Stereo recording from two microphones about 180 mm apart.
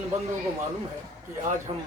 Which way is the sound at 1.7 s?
30° right (ahead or behind).